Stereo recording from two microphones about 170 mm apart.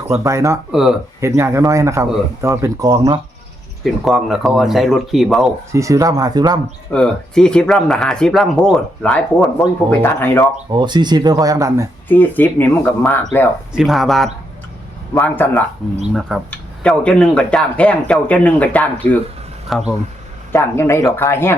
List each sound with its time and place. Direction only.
0.1 s speech: 15° right (ahead or behind)
0.7 s speech: centre (ahead or behind)
1.2 s speech: 15° right (ahead or behind)
3.8 s speech: centre (ahead or behind)
5.7 s speech: 20° right (ahead or behind)
6.9 s speech: 5° left (ahead or behind)
10.7 s speech: 25° right (ahead or behind)
12.0 s speech: 10° left (ahead or behind)
13.7 s speech: centre (ahead or behind)
15.2 s speech: 10° left (ahead or behind)
20.5 s speech: 15° left (ahead or behind)